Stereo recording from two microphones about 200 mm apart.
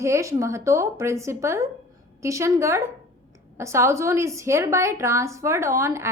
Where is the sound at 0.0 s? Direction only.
15° right (ahead or behind).